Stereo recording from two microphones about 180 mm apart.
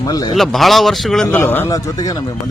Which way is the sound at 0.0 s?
20° left (ahead or behind).